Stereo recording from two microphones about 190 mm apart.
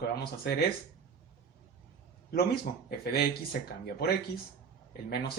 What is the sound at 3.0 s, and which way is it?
Speech, 55° left (ahead or behind).